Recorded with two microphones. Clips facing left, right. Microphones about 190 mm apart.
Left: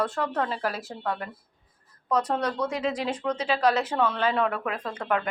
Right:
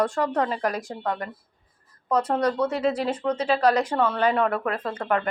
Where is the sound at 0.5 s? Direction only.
5° left (ahead or behind).